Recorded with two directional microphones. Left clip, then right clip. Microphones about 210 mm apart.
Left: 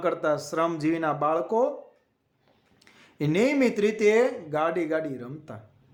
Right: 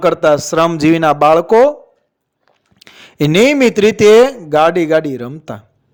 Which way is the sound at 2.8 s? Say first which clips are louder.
Right 15 dB; 45° right (ahead or behind).